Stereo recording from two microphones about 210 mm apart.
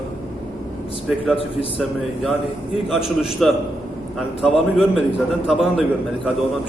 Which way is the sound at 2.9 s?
Centre (ahead or behind).